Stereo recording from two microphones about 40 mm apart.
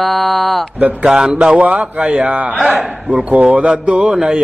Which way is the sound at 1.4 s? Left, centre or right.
Right.